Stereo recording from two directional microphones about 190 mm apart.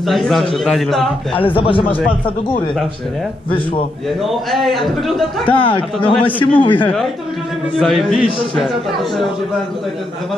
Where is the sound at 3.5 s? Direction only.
25° left (ahead or behind).